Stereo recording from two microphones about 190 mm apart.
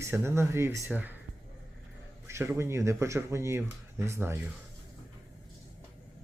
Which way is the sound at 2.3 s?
15° right (ahead or behind).